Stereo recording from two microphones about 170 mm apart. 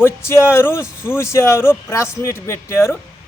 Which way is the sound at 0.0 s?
15° left (ahead or behind).